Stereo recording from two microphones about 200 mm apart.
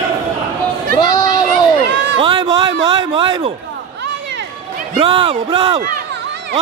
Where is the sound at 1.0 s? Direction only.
20° left (ahead or behind).